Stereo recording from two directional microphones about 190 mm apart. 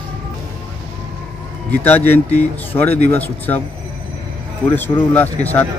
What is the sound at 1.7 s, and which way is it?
A man's voice, 10° left (ahead or behind).